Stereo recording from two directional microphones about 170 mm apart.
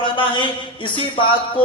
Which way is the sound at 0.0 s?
30° left (ahead or behind).